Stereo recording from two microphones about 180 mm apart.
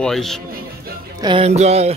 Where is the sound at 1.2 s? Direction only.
30° right (ahead or behind).